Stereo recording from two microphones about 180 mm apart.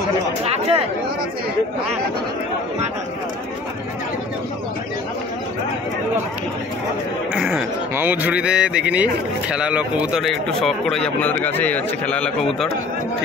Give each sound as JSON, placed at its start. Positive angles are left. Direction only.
{"t": 0.5, "sound": "speech", "side_deg": -35}
{"t": 7.3, "sound": "speech", "side_deg": -5}